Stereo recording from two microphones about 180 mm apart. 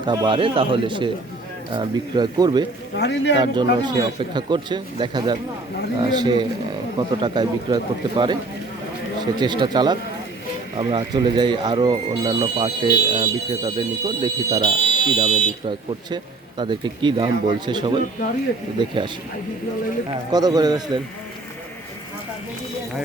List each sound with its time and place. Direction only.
0.0 s speech: 25° right (ahead or behind)
2.9 s a man's voice: 75° left (ahead or behind)
3.4 s speech: 25° right (ahead or behind)
9.4 s speech: 25° right (ahead or behind)
20.3 s speech: 20° right (ahead or behind)